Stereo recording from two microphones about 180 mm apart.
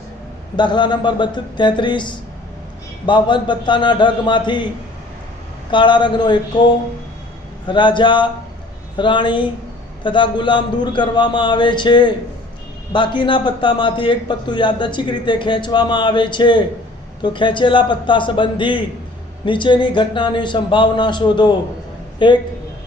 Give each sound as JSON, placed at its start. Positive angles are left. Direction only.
{"t": 0.5, "sound": "a man's voice", "side_deg": 25}
{"t": 5.7, "sound": "a man's voice", "side_deg": 25}
{"t": 7.7, "sound": "a man's voice", "side_deg": 25}